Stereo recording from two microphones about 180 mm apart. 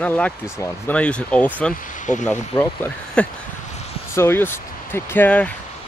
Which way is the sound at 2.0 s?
45° left (ahead or behind).